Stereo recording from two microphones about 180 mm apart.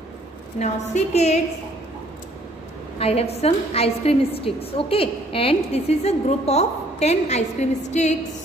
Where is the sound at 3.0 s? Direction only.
35° left (ahead or behind).